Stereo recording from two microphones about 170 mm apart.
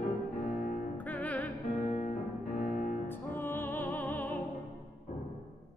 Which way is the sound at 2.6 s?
45° left (ahead or behind).